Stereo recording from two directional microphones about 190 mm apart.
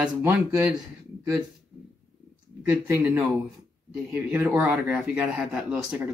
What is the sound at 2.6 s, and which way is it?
Speech, 15° right (ahead or behind).